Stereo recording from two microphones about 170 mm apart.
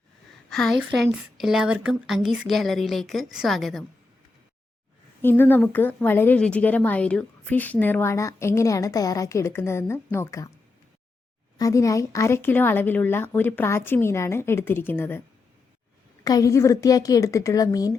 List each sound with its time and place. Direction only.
0.5 s a woman's voice: centre (ahead or behind)
5.2 s a woman's voice: 10° left (ahead or behind)
11.5 s a woman's voice: 20° left (ahead or behind)
16.2 s a woman's voice: 20° left (ahead or behind)